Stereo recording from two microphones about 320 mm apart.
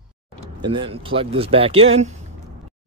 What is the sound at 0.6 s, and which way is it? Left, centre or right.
Speech, centre.